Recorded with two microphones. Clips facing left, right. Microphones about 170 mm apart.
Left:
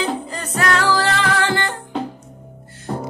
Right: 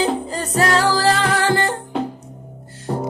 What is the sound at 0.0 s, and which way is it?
Music, 35° right (ahead or behind).